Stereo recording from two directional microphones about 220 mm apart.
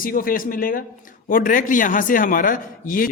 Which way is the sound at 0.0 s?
40° left (ahead or behind).